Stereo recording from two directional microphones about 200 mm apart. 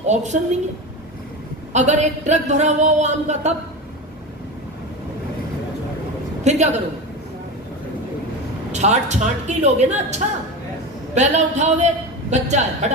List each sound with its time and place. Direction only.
0.0 s speech: 35° right (ahead or behind)
1.7 s speech: 35° right (ahead or behind)
6.4 s a man's voice: 35° right (ahead or behind)
8.7 s speech: 35° right (ahead or behind)